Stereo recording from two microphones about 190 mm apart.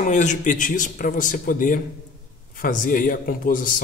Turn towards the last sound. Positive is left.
turn(degrees=45)  # may be behind; listen again after turning